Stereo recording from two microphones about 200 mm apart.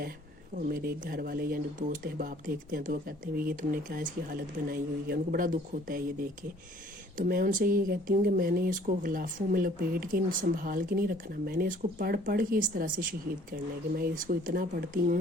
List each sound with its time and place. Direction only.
0.7 s speech: 45° right (ahead or behind)
7.2 s speech: 45° right (ahead or behind)